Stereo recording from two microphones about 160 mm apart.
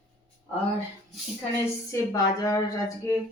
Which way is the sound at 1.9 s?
20° left (ahead or behind).